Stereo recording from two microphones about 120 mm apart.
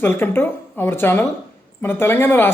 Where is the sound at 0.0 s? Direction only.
20° left (ahead or behind).